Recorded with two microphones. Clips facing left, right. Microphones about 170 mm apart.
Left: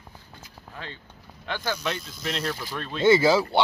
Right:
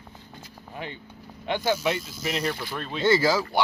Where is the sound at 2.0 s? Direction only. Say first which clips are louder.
Right 2 dB; 5° right (ahead or behind).